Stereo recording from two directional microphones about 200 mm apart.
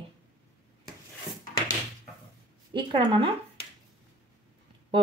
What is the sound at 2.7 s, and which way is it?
Speech, 25° right (ahead or behind).